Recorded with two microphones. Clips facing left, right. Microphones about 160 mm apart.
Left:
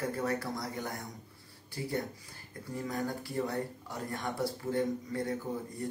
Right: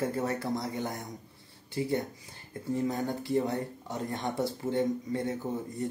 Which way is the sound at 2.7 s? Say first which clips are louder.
Right 5 dB; 25° right (ahead or behind).